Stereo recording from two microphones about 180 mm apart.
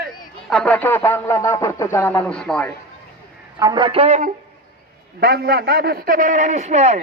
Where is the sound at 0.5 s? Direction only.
5° left (ahead or behind).